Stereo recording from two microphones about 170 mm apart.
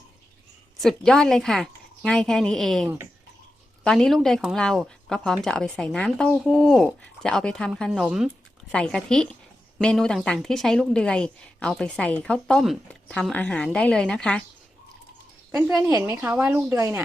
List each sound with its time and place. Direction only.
0.8 s a woman's voice: centre (ahead or behind)
15.9 s a woman's voice: 20° right (ahead or behind)